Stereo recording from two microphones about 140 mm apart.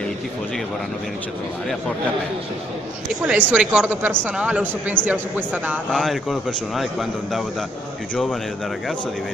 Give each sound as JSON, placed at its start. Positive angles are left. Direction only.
{"t": 3.3, "sound": "a woman's voice", "side_deg": -10}
{"t": 5.9, "sound": "a man's voice", "side_deg": 0}